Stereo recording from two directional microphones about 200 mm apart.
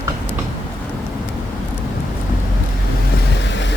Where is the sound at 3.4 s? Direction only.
65° left (ahead or behind).